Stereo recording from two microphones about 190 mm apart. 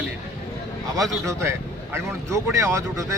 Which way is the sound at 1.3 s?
15° right (ahead or behind).